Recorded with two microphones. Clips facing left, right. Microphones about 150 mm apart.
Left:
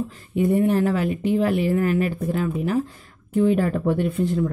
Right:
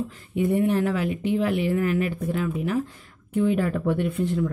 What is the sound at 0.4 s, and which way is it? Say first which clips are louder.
Speech: left 3 dB; 40° left (ahead or behind).